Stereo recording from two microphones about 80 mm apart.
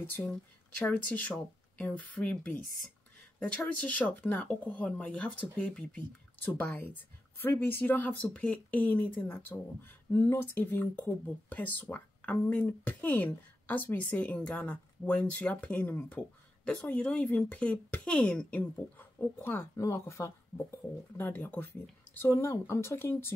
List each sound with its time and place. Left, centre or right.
0.0 s speech: left
3.3 s speech: centre; by 20.3 s left
20.5 s speech: left